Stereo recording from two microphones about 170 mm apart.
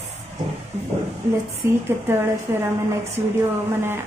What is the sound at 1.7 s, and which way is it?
Speech, 15° right (ahead or behind).